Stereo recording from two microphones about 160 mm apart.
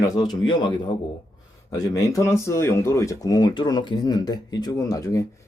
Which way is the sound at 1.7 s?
20° left (ahead or behind).